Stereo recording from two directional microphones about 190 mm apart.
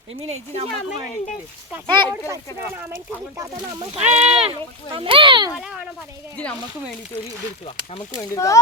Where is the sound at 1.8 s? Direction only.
25° right (ahead or behind).